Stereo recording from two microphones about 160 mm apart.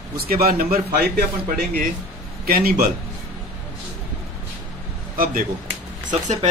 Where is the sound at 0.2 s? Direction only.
70° right (ahead or behind).